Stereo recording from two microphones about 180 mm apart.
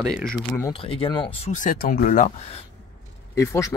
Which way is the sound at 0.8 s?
25° left (ahead or behind).